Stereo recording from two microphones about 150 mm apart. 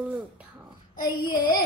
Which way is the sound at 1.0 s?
25° left (ahead or behind).